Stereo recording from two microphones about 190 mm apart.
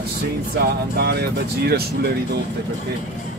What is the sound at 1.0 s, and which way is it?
Speech, 55° right (ahead or behind).